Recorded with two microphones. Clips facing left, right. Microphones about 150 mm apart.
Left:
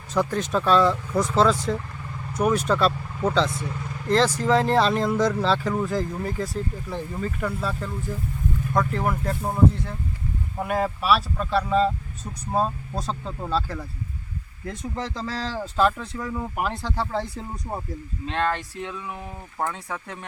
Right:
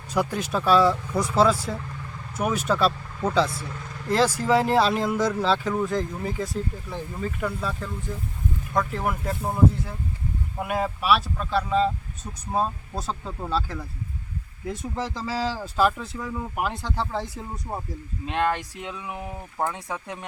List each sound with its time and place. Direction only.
0.1 s speech: 10° right (ahead or behind)
4.1 s speech: 5° right (ahead or behind)
18.3 s speech: 15° right (ahead or behind)